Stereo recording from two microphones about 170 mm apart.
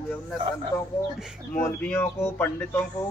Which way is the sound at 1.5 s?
15° left (ahead or behind).